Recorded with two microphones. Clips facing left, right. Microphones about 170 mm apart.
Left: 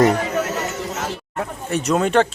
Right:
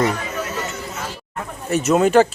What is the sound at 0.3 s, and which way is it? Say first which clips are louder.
Chatter: left 4 dB; 70° left (ahead or behind).